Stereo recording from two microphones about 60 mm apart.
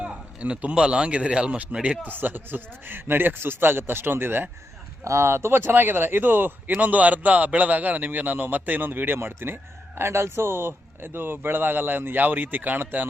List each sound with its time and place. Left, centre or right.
0.0 s speech: centre
2.0 s speech: right
5.0 s speech: right